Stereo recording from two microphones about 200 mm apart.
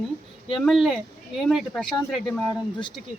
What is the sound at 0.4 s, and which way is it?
Speech, centre (ahead or behind).